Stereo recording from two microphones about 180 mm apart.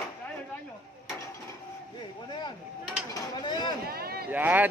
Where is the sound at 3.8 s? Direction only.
60° right (ahead or behind).